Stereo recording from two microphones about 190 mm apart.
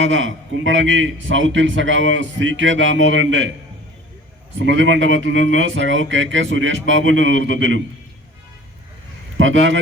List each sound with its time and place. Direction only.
0.0 s a man's voice: 85° right
4.5 s a man's voice: 80° right
9.4 s speech: 80° right